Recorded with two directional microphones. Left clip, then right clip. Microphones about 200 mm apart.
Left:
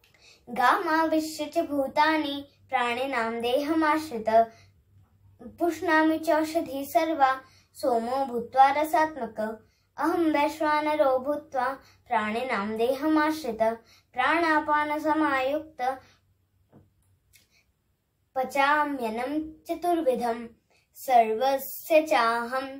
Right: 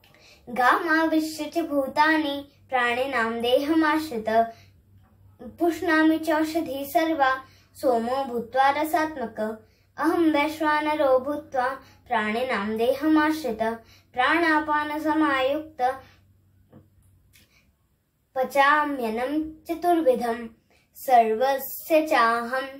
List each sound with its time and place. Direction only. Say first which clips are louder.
0.2 s speech: right 2 dB; 15° left (ahead or behind)
5.7 s speech: right 2 dB; 15° left (ahead or behind)
18.3 s speech: right 4 dB; 15° left (ahead or behind)